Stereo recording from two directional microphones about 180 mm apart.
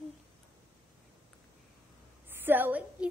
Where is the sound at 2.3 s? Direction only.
10° right (ahead or behind).